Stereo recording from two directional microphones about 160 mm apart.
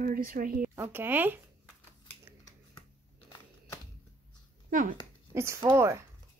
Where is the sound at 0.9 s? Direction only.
10° right (ahead or behind).